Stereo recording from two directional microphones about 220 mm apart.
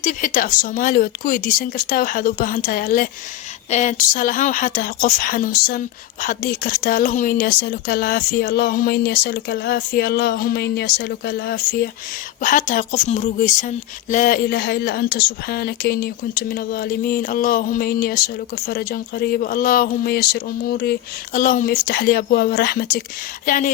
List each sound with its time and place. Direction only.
0.0 s a woman's voice: 35° left (ahead or behind)